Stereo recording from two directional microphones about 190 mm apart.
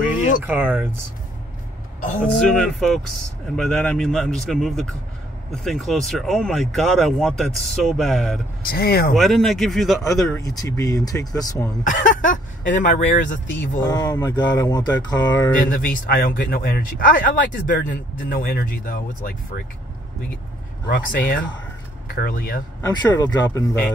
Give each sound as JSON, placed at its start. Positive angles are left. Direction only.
{"t": 0.5, "sound": "speech", "side_deg": -10}
{"t": 2.3, "sound": "speech", "side_deg": 0}
{"t": 8.6, "sound": "speech", "side_deg": 50}
{"t": 9.1, "sound": "speech", "side_deg": 0}
{"t": 10.4, "sound": "speech", "side_deg": 20}
{"t": 11.8, "sound": "speech", "side_deg": 45}
{"t": 13.6, "sound": "speech", "side_deg": 15}
{"t": 15.7, "sound": "speech", "side_deg": 45}
{"t": 20.9, "sound": "speech", "side_deg": 50}
{"t": 22.8, "sound": "speech", "side_deg": 15}